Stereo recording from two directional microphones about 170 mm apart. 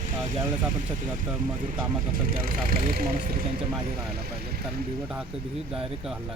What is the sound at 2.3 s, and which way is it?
Speech, 55° right (ahead or behind).